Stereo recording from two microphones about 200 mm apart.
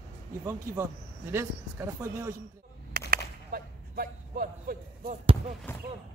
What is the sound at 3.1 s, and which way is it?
Whip, 50° right (ahead or behind).